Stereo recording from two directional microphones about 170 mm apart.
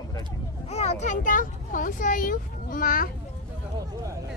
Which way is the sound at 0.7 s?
40° left (ahead or behind).